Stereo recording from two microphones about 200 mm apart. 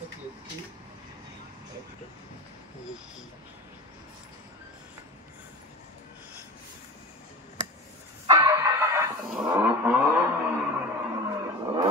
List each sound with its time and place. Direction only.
8.4 s vehicle: 15° right (ahead or behind)